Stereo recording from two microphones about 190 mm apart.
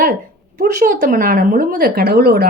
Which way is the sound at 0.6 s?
45° right (ahead or behind).